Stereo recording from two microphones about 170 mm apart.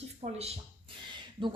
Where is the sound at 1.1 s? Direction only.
30° right (ahead or behind).